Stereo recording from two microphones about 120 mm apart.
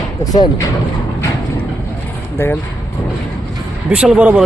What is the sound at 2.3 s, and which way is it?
Speech, 15° left (ahead or behind).